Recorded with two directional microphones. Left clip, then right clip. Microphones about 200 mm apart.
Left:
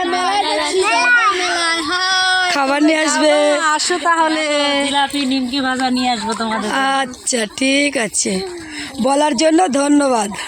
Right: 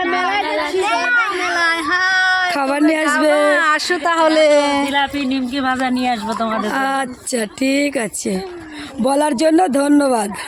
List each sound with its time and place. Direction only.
0.0 s a sound: centre (ahead or behind)
4.0 s speech: 55° right (ahead or behind)
4.9 s music: 5° left (ahead or behind)
5.5 s speech: 5° right (ahead or behind)